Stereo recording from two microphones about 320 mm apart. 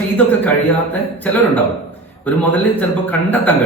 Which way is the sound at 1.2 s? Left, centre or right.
Centre.